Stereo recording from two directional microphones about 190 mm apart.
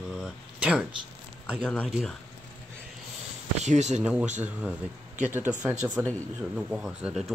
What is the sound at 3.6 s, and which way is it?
Speech, 35° right (ahead or behind).